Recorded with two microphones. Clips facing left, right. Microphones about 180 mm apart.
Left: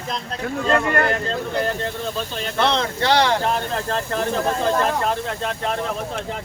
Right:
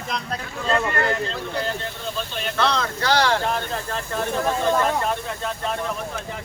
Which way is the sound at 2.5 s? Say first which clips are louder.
Left 3 dB; 20° left (ahead or behind).